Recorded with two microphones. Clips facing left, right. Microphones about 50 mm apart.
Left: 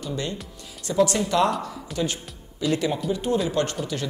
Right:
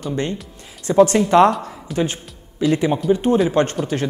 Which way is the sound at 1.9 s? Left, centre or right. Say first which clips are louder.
Right 6 dB; right.